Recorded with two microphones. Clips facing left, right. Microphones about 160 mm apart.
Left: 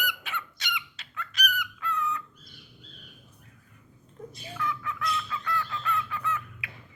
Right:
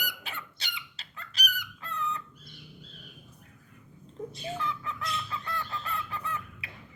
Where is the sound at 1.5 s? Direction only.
30° right (ahead or behind).